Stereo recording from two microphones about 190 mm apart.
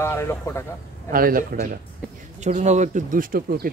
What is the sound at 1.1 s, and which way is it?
Speech, 50° right (ahead or behind).